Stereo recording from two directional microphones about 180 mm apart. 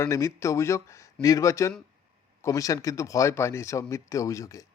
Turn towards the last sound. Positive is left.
turn(degrees=20)  # may be behind; listen again after turning